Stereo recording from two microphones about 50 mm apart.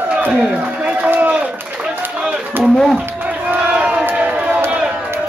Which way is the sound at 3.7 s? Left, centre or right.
Right.